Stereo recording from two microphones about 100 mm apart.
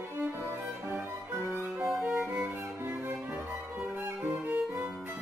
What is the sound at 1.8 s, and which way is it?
Music, 5° right (ahead or behind).